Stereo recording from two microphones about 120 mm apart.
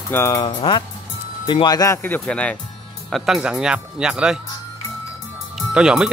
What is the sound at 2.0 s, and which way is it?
Speech, 15° left (ahead or behind).